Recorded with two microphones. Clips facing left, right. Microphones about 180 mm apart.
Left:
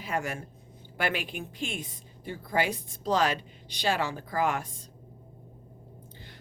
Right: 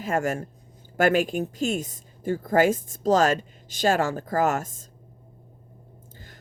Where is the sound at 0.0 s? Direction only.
45° right (ahead or behind).